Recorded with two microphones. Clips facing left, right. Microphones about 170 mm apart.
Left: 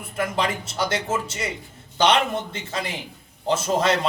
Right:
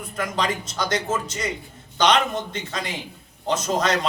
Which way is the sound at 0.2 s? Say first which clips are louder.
Left 1 dB; 25° left (ahead or behind).